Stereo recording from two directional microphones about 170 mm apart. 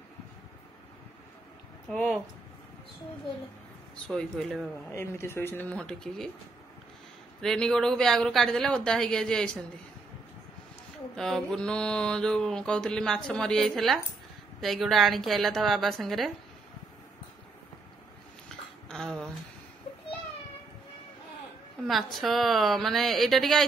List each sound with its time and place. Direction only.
1.9 s mantra: centre (ahead or behind)
3.9 s mantra: 5° left (ahead or behind)
4.9 s speech: 15° left (ahead or behind)
7.4 s mantra: 5° left (ahead or behind)
11.1 s mantra: centre (ahead or behind)
18.9 s a sound: 5° left (ahead or behind)
21.8 s mantra: centre (ahead or behind)